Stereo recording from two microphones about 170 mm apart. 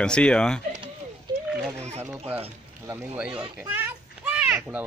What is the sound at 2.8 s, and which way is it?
Speech, 10° right (ahead or behind).